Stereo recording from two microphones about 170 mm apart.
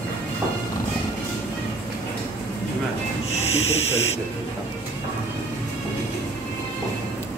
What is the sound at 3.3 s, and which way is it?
Hiss, 40° left (ahead or behind).